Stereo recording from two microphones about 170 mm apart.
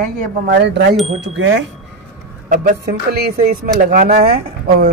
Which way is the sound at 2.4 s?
50° right (ahead or behind).